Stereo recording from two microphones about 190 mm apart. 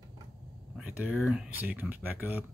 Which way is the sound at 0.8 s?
5° right (ahead or behind).